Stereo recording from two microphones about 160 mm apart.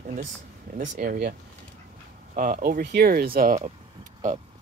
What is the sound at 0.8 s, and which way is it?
Speech, 70° right (ahead or behind).